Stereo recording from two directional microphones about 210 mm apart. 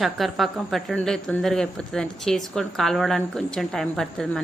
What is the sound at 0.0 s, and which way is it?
Speech, centre (ahead or behind).